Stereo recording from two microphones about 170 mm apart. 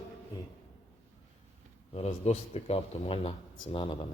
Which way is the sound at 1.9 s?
40° left (ahead or behind).